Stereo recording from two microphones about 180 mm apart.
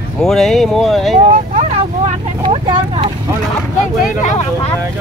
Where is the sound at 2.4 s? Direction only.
30° right (ahead or behind).